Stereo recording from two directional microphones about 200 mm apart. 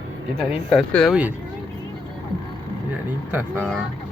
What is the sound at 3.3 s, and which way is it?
Speech, 10° right (ahead or behind).